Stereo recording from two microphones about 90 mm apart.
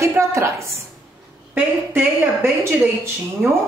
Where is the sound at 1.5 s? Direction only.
20° right (ahead or behind).